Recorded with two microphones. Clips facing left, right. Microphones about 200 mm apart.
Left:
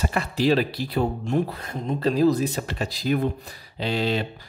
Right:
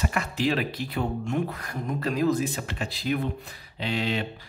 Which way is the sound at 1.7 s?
25° left (ahead or behind).